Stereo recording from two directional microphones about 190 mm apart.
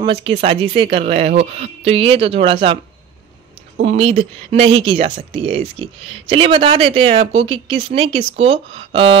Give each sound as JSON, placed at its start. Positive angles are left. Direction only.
{"t": 0.0, "sound": "speech", "side_deg": -30}
{"t": 3.8, "sound": "speech", "side_deg": -35}